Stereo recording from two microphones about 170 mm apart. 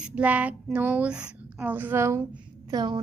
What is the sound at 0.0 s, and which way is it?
A woman's voice, 10° right (ahead or behind).